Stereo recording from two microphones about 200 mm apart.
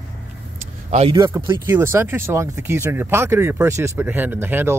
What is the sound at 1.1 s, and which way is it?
Speech, 20° right (ahead or behind).